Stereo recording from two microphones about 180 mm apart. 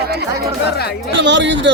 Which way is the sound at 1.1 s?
80° right.